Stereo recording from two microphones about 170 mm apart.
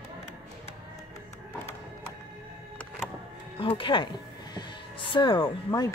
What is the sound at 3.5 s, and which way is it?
Speech, 30° left (ahead or behind).